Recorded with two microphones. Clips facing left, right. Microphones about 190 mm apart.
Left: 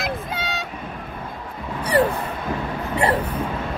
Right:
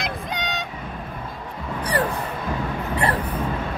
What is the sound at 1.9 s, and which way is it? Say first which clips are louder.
Vehicle: left 6 dB; 25° left (ahead or behind).